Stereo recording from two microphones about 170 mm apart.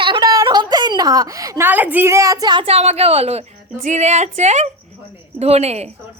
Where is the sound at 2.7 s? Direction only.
40° right (ahead or behind).